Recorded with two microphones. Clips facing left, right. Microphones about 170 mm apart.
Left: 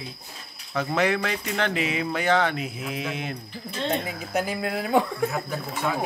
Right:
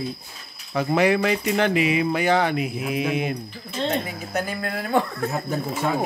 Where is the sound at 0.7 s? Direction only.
10° right (ahead or behind).